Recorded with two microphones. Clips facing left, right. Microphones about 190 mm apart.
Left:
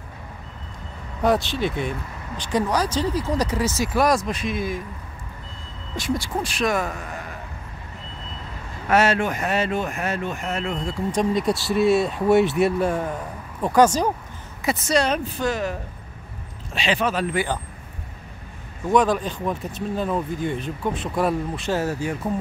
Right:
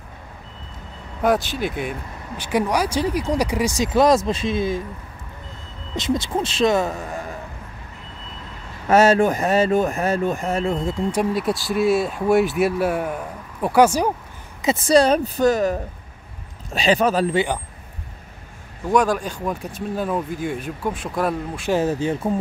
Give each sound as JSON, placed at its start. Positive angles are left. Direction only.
{"t": 1.2, "sound": "speech", "side_deg": 0}
{"t": 5.9, "sound": "speech", "side_deg": -20}
{"t": 8.9, "sound": "speech", "side_deg": -40}
{"t": 11.1, "sound": "speech", "side_deg": -5}
{"t": 14.9, "sound": "speech", "side_deg": -35}
{"t": 18.9, "sound": "speech", "side_deg": 0}
{"t": 21.6, "sound": "speech", "side_deg": -20}